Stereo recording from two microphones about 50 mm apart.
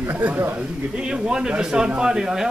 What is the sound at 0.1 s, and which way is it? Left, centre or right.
Speech, right.